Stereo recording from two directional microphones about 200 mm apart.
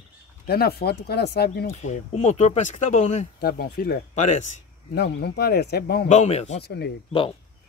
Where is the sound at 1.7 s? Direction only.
35° left (ahead or behind).